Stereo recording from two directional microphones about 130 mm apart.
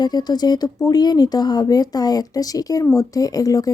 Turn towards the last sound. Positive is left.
turn(degrees=25)  # may be behind; listen again after turning